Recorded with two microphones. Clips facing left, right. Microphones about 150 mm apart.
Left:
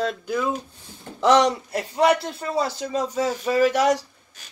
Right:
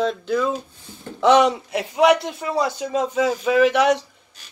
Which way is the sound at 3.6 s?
65° right (ahead or behind).